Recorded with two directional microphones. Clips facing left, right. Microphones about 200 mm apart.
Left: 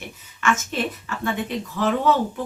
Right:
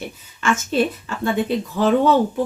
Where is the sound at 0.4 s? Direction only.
30° right (ahead or behind).